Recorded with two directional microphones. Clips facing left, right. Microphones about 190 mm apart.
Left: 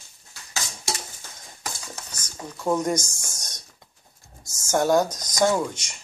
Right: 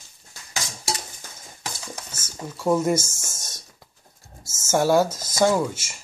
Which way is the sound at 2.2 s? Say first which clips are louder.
Right 3 dB; 5° right (ahead or behind).